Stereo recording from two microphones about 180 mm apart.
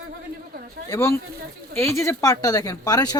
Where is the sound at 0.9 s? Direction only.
15° left (ahead or behind).